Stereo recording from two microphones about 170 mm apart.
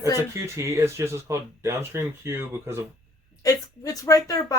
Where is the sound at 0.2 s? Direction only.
15° right (ahead or behind).